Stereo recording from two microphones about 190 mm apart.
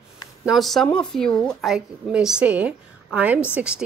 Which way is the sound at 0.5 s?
Centre (ahead or behind).